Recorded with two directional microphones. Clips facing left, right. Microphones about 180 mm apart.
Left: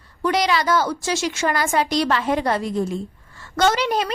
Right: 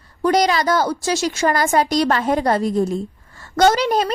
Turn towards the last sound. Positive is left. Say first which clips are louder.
# right 4 dB
turn(degrees=-40)  # may be behind; listen again after turning